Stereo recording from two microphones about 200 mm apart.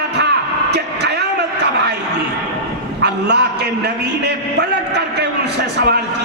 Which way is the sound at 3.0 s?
55° right (ahead or behind).